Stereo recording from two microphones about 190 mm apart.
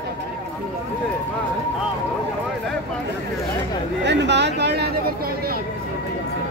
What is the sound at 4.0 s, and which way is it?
Speech, 65° right (ahead or behind).